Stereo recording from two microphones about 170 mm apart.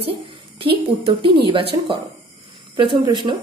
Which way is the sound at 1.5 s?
30° right (ahead or behind).